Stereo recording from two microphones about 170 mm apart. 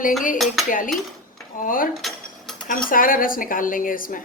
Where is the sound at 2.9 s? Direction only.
55° left (ahead or behind).